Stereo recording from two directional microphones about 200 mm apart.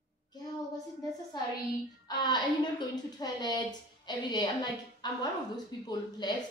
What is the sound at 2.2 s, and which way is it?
A woman's voice, 20° left (ahead or behind).